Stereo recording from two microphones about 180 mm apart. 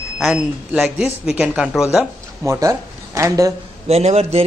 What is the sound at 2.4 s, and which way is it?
Speech, 15° right (ahead or behind).